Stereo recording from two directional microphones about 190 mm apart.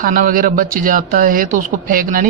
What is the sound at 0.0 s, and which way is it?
Speech, 50° right (ahead or behind).